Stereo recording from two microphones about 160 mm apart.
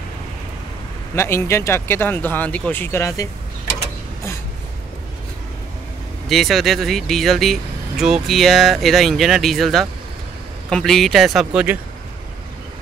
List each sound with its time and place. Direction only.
1.1 s speech: 15° left (ahead or behind)
6.2 s speech: centre (ahead or behind)